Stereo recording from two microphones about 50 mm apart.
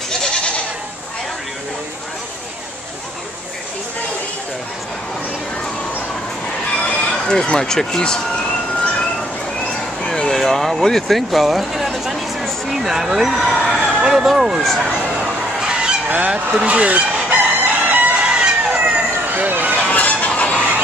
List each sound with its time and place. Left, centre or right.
6.8 s speech: left
10.0 s a sound: centre
12.6 s speech: centre
13.7 s a sound: centre
15.1 s goose: centre
16.5 s speech: right
17.3 s crowing: right
18.2 s chicken: right
18.6 s cat: right
19.9 s fowl: left